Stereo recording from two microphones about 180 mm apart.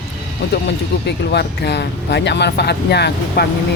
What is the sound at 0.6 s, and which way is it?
Speech, 70° left (ahead or behind).